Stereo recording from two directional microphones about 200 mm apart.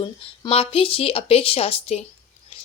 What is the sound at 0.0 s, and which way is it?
Speech, 25° left (ahead or behind).